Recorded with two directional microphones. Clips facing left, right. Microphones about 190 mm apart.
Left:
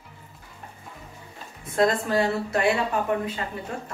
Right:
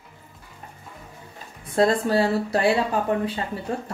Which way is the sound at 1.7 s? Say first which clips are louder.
Right 2 dB; 30° right (ahead or behind).